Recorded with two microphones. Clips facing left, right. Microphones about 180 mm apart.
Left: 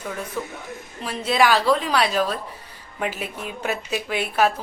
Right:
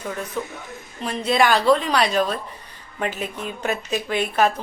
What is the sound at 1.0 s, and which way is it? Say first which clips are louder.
A woman's voice: right 1 dB; 5° left (ahead or behind).